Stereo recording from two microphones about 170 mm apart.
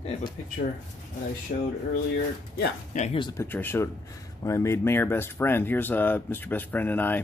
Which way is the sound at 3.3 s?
15° left (ahead or behind).